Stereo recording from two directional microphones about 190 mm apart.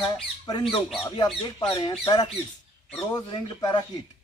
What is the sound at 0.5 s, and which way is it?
Speech, 20° left (ahead or behind).